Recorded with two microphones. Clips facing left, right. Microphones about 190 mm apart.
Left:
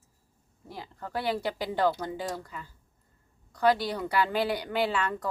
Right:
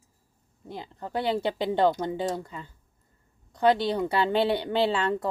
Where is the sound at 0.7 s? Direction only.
20° right (ahead or behind).